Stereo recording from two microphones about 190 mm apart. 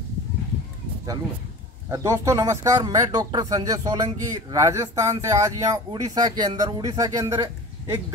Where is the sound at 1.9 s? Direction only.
15° right (ahead or behind).